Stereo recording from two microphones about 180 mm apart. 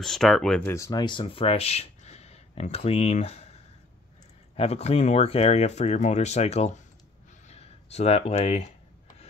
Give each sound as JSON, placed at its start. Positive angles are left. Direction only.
{"t": 0.0, "sound": "speech", "side_deg": 0}
{"t": 0.7, "sound": "speech", "side_deg": 15}
{"t": 4.6, "sound": "speech", "side_deg": 35}